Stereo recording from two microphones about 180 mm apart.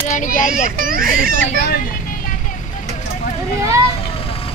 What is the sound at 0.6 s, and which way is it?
Speech, 55° right (ahead or behind).